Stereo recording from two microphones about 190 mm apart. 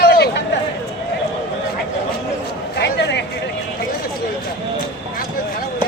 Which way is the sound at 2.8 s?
65° left (ahead or behind).